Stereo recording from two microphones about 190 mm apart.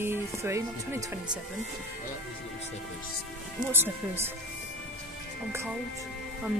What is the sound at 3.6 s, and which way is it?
Speech, 10° right (ahead or behind).